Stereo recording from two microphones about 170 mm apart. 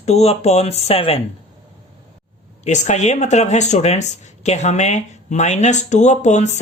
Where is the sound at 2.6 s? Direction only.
45° left (ahead or behind).